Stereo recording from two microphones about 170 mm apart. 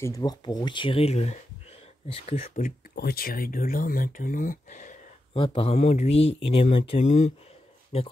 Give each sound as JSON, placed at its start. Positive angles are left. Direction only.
{"t": 0.0, "sound": "speech", "side_deg": 20}
{"t": 3.0, "sound": "speech", "side_deg": 65}
{"t": 5.3, "sound": "speech", "side_deg": 30}